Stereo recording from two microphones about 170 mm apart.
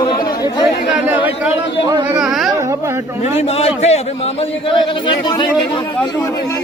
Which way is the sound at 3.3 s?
35° left (ahead or behind).